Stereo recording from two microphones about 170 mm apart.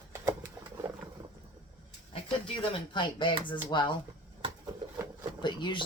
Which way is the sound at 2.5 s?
30° left (ahead or behind).